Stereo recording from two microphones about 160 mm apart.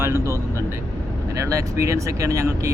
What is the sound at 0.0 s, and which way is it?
Vehicle, 15° right (ahead or behind).